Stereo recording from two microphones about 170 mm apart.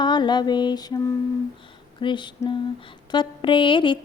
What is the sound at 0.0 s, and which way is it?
Speech, 25° left (ahead or behind).